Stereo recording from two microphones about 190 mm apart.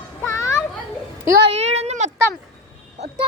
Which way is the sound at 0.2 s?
15° left (ahead or behind).